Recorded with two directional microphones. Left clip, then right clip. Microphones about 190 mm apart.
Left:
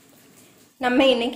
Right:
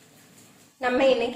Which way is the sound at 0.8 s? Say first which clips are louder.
Left 3 dB; 40° left (ahead or behind).